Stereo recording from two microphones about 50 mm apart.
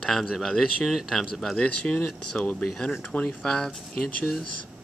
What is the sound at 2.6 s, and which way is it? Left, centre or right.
Speech, centre.